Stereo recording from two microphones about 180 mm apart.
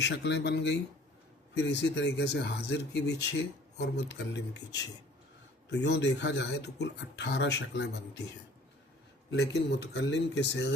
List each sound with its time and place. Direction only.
0.0 s speech: 70° left (ahead or behind)
9.3 s speech: 70° left (ahead or behind)